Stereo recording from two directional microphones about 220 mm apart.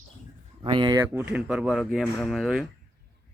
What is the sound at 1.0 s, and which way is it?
A man's voice, 10° right (ahead or behind).